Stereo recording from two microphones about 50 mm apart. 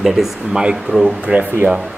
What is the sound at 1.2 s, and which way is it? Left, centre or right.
Speech, right.